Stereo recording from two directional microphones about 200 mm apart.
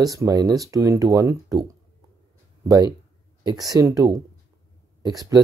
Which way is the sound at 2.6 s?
20° right (ahead or behind).